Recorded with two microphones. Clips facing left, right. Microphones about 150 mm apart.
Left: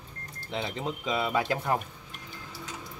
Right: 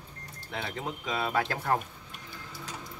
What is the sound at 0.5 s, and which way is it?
Speech, 20° left (ahead or behind).